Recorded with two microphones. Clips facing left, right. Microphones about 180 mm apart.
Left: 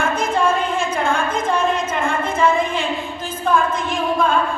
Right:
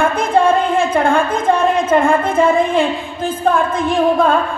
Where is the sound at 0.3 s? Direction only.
55° right (ahead or behind).